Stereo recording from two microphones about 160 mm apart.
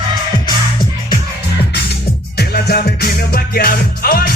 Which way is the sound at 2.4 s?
80° left.